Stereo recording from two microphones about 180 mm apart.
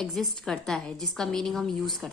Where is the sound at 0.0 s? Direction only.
Centre (ahead or behind).